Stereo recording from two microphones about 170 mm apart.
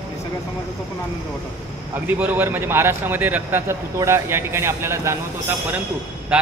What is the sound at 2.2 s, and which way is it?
A man's voice, 10° right (ahead or behind).